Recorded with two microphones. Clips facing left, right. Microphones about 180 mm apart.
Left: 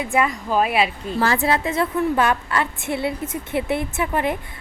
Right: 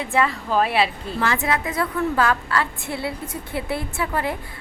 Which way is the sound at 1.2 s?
35° left (ahead or behind).